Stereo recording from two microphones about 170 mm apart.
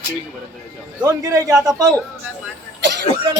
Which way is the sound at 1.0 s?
20° right (ahead or behind).